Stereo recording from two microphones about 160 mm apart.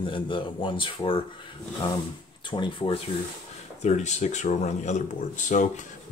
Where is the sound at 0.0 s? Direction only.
30° left (ahead or behind).